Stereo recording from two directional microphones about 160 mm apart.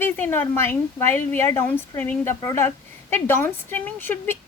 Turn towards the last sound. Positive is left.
turn(degrees=10)  # may be behind; listen again after turning